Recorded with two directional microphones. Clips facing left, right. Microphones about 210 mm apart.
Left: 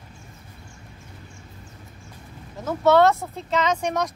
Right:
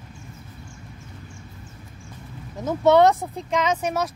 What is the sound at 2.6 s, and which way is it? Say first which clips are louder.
Speech: right 1 dB; 20° right (ahead or behind).